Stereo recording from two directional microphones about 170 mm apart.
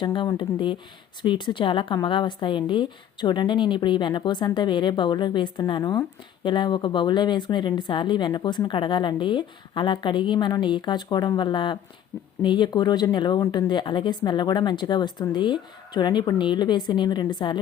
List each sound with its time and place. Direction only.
0.0 s a woman's voice: 25° left (ahead or behind)